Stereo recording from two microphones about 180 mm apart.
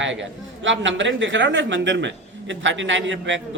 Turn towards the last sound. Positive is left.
turn(degrees=-90)